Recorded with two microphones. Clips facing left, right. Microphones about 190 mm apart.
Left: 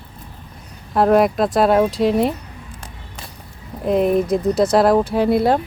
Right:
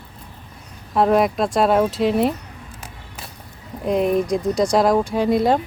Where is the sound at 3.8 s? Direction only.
Centre (ahead or behind).